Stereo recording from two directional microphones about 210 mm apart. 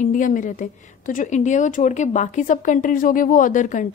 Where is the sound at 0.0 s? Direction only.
40° left (ahead or behind).